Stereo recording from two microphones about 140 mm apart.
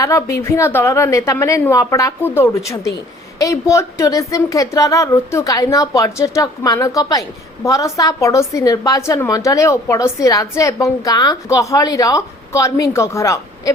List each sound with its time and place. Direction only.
0.0 s a woman's voice: 20° left (ahead or behind)